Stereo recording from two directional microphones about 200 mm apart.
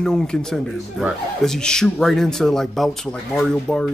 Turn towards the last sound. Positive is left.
turn(degrees=0)  # may be behind; listen again after turning